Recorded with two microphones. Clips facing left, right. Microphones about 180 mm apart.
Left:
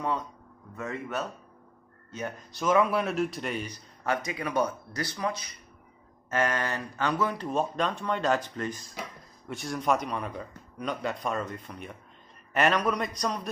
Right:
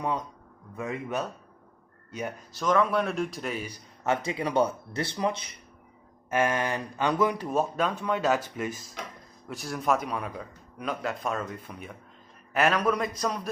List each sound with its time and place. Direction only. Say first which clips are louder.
0.7 s speech: right 2 dB; 15° right (ahead or behind)
2.5 s speech: even; 5° left (ahead or behind)
4.0 s speech: right 3 dB; 25° right (ahead or behind)
6.3 s speech: right 2 dB; 15° right (ahead or behind)